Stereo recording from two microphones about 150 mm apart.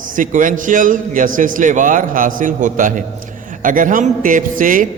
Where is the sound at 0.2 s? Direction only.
60° right (ahead or behind).